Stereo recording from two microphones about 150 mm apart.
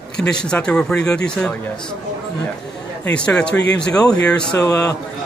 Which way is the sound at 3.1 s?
5° left (ahead or behind).